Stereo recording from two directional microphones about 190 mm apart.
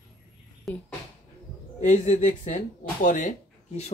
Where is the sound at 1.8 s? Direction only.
40° left (ahead or behind).